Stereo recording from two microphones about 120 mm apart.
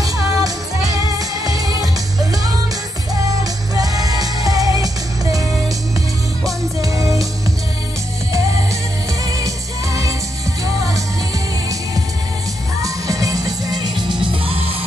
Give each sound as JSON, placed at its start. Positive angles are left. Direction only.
{"t": 0.0, "sound": "music", "side_deg": -30}
{"t": 3.7, "sound": "music", "side_deg": -30}
{"t": 12.8, "sound": "music", "side_deg": -30}